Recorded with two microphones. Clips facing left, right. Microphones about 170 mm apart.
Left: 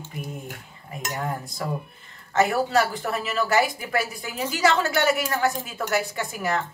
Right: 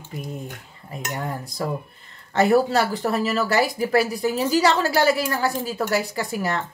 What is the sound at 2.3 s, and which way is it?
Speech, 30° right (ahead or behind).